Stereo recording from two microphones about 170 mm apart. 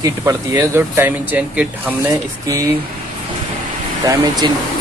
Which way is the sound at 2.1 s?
20° right (ahead or behind).